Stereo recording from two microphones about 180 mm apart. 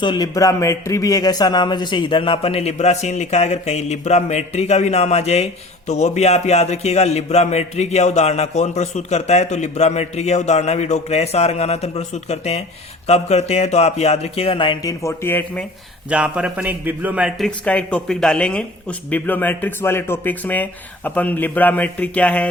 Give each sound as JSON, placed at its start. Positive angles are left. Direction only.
{"t": 0.0, "sound": "a man's voice", "side_deg": 25}
{"t": 16.0, "sound": "a man's voice", "side_deg": -5}